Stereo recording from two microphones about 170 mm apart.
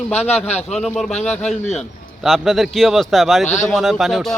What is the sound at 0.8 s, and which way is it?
A man's voice, centre (ahead or behind).